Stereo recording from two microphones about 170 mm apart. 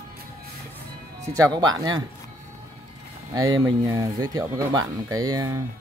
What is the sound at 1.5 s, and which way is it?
Speech, 25° right (ahead or behind).